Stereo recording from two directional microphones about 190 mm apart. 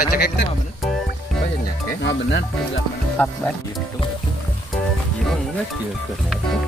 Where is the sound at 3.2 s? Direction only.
10° left (ahead or behind).